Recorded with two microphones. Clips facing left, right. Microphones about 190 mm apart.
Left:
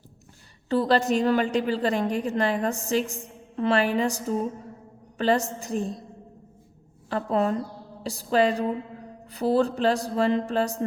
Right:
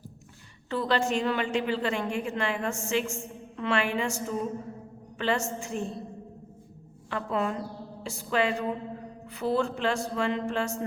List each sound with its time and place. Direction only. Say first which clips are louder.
0.7 s a woman's voice: left 5 dB; 35° left (ahead or behind)
7.1 s a woman's voice: left 5 dB; 35° left (ahead or behind)